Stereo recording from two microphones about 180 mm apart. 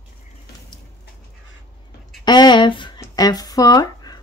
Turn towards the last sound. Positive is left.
turn(degrees=20)  # may be behind; listen again after turning